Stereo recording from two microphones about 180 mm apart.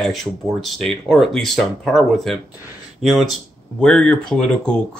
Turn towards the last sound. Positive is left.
turn(degrees=5)  # may be behind; listen again after turning